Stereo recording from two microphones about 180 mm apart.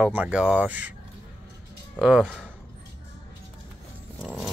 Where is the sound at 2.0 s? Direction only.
5° right (ahead or behind).